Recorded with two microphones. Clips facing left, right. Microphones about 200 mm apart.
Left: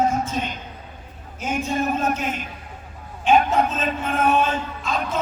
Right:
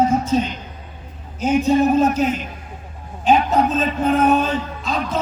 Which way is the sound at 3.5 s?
40° right (ahead or behind).